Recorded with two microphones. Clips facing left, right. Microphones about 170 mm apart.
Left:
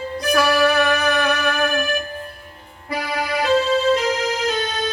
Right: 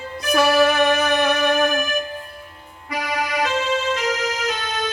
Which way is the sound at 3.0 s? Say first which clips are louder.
Even; 30° left (ahead or behind).